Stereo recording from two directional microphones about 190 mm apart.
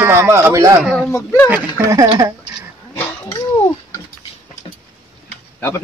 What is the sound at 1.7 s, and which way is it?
Speech, 15° right (ahead or behind).